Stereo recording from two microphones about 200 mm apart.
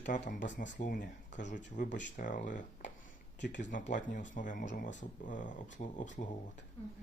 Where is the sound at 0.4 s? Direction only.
65° left (ahead or behind).